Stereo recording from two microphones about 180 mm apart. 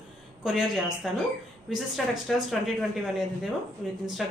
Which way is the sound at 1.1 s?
Centre (ahead or behind).